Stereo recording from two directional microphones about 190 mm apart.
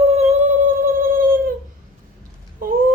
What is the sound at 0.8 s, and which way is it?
Music, 50° right (ahead or behind).